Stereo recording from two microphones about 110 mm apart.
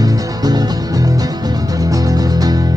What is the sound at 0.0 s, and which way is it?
Music, 35° right (ahead or behind).